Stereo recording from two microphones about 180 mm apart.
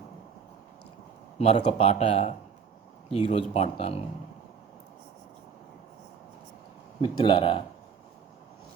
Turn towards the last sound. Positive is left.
turn(degrees=25)  # may be behind; listen again after turning